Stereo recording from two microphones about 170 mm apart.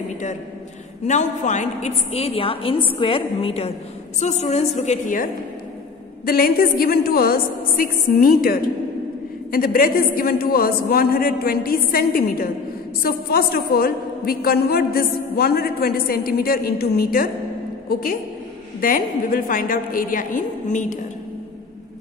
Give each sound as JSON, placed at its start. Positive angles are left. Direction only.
{"t": 1.0, "sound": "a woman's voice", "side_deg": 45}
{"t": 18.8, "sound": "a woman's voice", "side_deg": 55}